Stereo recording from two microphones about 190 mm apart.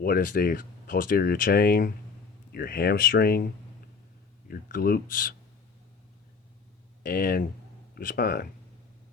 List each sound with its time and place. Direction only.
0.0 s speech: 50° left (ahead or behind)
7.0 s speech: 50° left (ahead or behind)